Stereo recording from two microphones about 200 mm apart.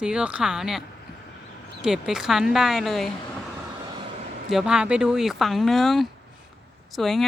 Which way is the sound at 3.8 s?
20° right (ahead or behind).